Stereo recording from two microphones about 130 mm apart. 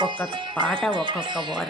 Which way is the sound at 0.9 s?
40° right (ahead or behind).